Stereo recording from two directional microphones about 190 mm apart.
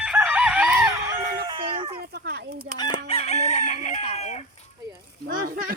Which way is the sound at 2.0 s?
60° right (ahead or behind).